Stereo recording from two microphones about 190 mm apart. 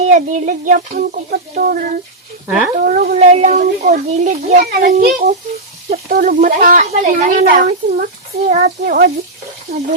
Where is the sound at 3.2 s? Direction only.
35° right (ahead or behind).